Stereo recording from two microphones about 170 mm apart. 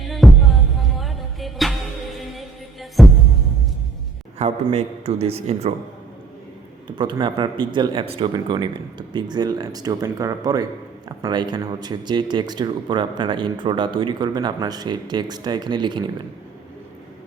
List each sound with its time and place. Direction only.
0.1 s music: centre (ahead or behind)
3.0 s music: centre (ahead or behind)
4.4 s a man's voice: 40° right (ahead or behind)
6.8 s speech: 25° right (ahead or behind)